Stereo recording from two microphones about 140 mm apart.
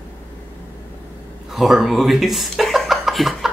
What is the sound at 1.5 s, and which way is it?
Speech, centre (ahead or behind).